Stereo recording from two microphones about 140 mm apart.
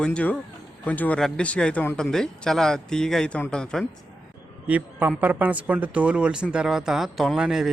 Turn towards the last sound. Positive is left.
turn(degrees=-5)  # may be behind; listen again after turning